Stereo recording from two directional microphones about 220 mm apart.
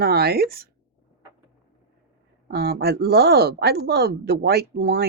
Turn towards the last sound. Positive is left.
turn(degrees=-45)  # may be behind; listen again after turning